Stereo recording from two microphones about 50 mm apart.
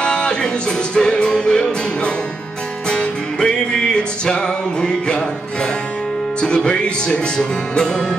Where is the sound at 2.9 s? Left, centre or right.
Centre.